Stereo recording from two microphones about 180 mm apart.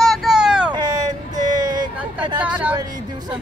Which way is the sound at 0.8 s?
20° right (ahead or behind).